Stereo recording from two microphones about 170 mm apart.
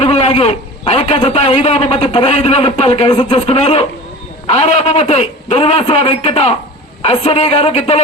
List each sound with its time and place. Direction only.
0.0 s a man's voice: 40° left (ahead or behind)